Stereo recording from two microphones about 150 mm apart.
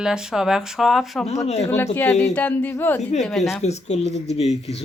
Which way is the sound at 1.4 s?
45° left (ahead or behind).